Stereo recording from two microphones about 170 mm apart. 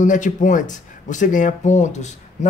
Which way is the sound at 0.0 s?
50° left (ahead or behind).